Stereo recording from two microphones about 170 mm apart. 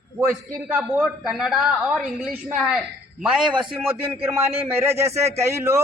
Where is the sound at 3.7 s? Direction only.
10° right (ahead or behind).